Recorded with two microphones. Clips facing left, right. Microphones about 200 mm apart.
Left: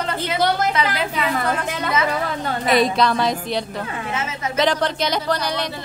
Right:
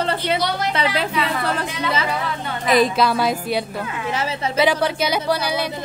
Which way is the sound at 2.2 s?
40° left (ahead or behind).